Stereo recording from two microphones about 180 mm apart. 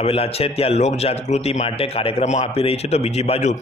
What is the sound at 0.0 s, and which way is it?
A man's voice, 35° left (ahead or behind).